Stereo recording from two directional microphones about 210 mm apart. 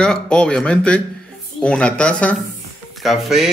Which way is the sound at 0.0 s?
5° left (ahead or behind).